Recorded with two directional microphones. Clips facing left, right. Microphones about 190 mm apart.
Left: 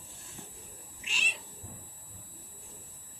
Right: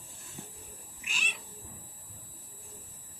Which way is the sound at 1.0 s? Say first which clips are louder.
Even; 30° left (ahead or behind).